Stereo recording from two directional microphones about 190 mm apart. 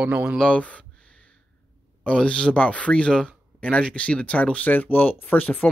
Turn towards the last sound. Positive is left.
turn(degrees=10)  # may be behind; listen again after turning